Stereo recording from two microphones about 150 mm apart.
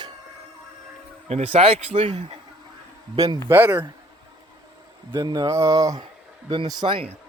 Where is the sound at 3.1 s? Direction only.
35° right (ahead or behind).